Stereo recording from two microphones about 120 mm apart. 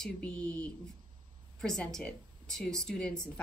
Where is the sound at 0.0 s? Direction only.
10° left (ahead or behind).